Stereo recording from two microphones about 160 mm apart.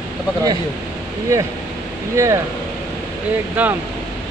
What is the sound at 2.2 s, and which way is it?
Speech, 20° right (ahead or behind).